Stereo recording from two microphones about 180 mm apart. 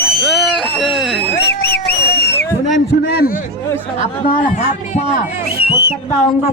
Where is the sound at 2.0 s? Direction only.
60° left (ahead or behind).